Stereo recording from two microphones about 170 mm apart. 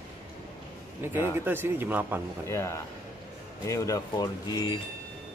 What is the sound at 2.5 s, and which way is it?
Speech, 15° left (ahead or behind).